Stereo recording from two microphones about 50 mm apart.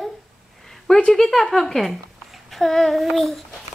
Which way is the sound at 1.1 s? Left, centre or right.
Centre.